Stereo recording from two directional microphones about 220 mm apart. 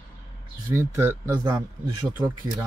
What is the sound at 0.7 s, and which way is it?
Speech, 10° right (ahead or behind).